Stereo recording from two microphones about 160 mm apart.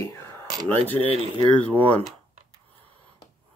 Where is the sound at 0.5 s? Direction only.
25° right (ahead or behind).